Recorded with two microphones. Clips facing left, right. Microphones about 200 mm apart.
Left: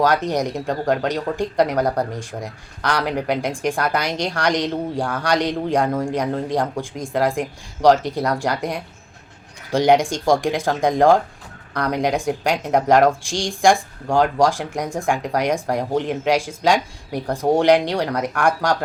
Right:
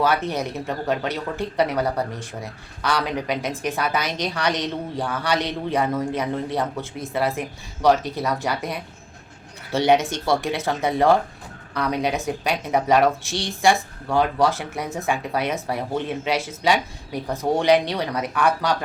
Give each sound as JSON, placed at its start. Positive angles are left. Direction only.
{"t": 0.0, "sound": "speech", "side_deg": 15}